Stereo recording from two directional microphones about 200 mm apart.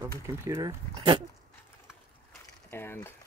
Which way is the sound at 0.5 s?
15° right (ahead or behind).